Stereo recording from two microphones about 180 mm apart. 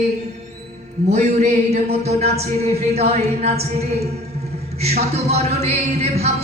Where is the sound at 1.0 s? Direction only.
40° right (ahead or behind).